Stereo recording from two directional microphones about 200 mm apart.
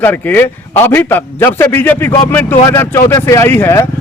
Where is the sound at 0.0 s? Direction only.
10° left (ahead or behind).